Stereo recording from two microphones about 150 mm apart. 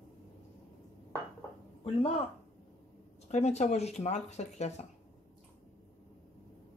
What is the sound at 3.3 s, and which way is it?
Speech, 50° left (ahead or behind).